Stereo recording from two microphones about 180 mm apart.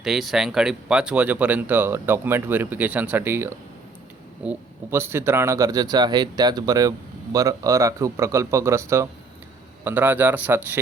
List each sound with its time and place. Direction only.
0.0 s speech: centre (ahead or behind)